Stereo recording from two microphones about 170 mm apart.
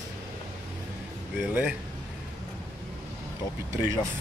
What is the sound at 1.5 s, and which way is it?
Speech, 10° right (ahead or behind).